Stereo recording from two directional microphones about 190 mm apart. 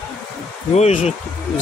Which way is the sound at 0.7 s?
35° left (ahead or behind).